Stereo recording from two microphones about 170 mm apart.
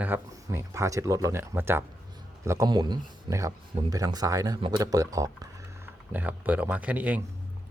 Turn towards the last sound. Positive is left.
turn(degrees=-10)  # may be behind; listen again after turning